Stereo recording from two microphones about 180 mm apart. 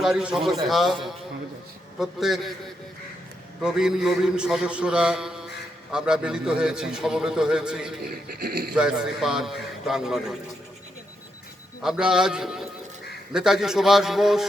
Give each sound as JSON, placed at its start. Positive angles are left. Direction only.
{"t": 0.0, "sound": "a man's voice", "side_deg": -5}
{"t": 2.0, "sound": "a man's voice", "side_deg": 0}
{"t": 3.6, "sound": "a man's voice", "side_deg": -5}
{"t": 8.0, "sound": "speech", "side_deg": -55}
{"t": 8.7, "sound": "a man's voice", "side_deg": -5}
{"t": 11.8, "sound": "a man's voice", "side_deg": -5}